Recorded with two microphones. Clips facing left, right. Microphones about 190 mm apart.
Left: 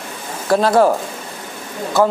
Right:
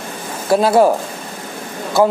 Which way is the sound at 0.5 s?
10° right (ahead or behind).